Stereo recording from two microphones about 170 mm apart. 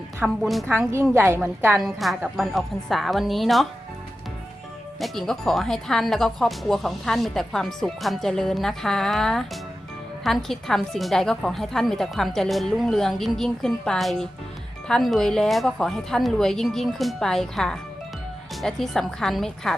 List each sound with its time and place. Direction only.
0.4 s speech: centre (ahead or behind)
1.1 s a woman's voice: 15° right (ahead or behind)
1.8 s speech: centre (ahead or behind)
4.9 s speech: centre (ahead or behind)